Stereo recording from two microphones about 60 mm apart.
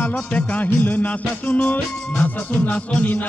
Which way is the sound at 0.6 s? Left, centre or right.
Left.